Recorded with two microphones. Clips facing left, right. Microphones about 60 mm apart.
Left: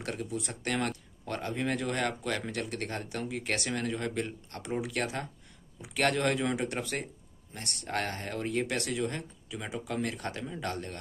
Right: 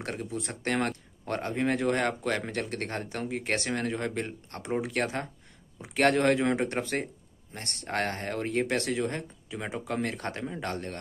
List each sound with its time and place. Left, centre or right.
0.0 s speech: right